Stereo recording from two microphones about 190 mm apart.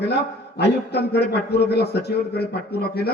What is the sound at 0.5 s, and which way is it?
A man's voice, 60° left (ahead or behind).